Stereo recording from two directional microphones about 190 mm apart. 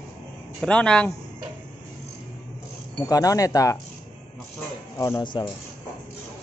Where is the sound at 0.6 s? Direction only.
5° left (ahead or behind).